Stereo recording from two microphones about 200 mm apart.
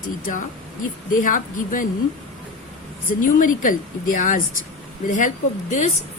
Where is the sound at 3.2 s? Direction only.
40° left (ahead or behind).